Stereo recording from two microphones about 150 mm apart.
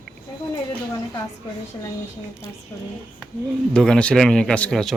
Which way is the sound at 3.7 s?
5° left (ahead or behind).